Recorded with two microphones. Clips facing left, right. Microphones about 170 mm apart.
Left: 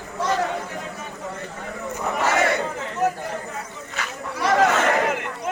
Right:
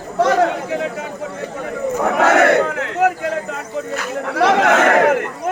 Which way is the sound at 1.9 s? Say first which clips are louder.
Right 8 dB; 65° right (ahead or behind).